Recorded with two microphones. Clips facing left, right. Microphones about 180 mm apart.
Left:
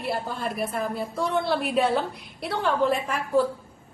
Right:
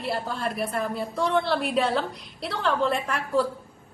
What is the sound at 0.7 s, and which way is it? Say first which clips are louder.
A woman's voice: even; centre (ahead or behind).